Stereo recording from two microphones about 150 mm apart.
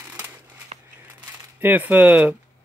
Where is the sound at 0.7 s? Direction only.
45° right (ahead or behind).